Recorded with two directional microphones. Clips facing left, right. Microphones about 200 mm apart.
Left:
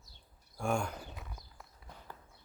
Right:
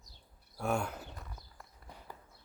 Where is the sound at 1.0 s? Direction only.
Centre (ahead or behind).